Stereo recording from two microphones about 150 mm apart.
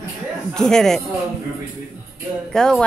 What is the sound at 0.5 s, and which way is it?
Speech, 5° left (ahead or behind).